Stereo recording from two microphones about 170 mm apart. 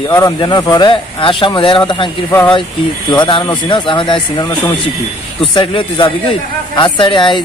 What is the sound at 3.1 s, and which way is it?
Speech, 25° left (ahead or behind).